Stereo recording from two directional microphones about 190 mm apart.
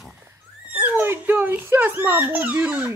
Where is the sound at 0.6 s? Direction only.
10° right (ahead or behind).